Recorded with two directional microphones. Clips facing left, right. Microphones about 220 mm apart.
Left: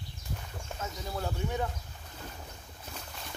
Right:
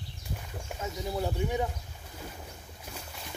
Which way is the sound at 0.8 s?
15° right (ahead or behind).